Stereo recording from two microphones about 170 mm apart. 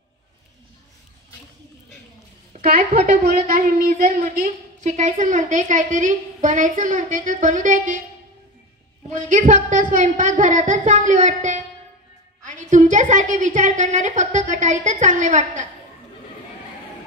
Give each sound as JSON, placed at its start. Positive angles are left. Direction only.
{"t": 2.5, "sound": "a woman's voice", "side_deg": -55}
{"t": 9.1, "sound": "a woman's voice", "side_deg": -50}